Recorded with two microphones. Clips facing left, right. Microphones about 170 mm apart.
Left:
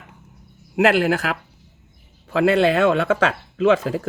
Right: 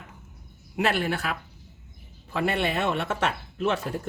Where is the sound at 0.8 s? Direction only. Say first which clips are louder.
Left 9 dB; 90° left.